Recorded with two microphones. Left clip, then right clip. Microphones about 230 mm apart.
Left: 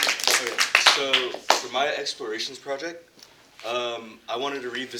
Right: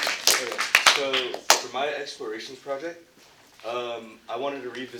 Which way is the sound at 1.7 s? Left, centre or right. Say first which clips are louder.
Left 3 dB; left.